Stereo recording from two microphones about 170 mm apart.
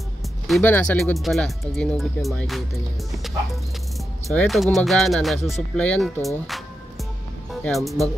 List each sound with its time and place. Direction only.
0.6 s speech: 10° left (ahead or behind)
4.3 s speech: centre (ahead or behind)
7.6 s speech: centre (ahead or behind)